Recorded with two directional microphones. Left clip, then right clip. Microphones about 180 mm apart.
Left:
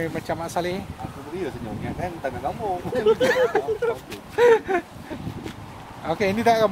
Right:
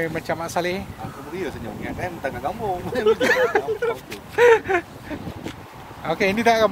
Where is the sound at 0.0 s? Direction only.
15° right (ahead or behind).